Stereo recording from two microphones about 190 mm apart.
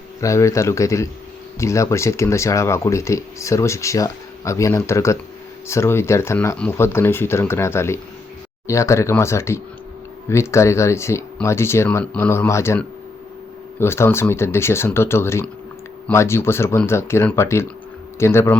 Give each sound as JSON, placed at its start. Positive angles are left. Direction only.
{"t": 0.2, "sound": "speech", "side_deg": 15}